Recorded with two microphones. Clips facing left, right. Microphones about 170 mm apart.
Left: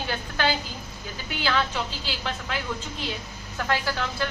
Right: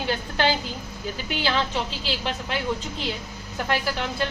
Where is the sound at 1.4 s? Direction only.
20° right (ahead or behind).